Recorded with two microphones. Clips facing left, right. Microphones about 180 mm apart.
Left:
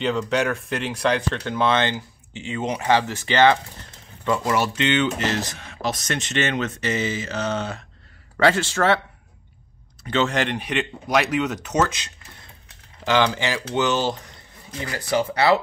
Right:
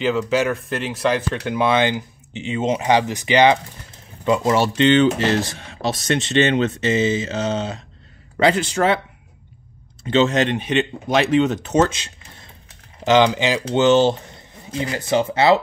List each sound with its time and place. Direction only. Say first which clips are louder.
0.0 s speech: right 3 dB; 5° right (ahead or behind)
10.0 s speech: right 5 dB; 25° right (ahead or behind)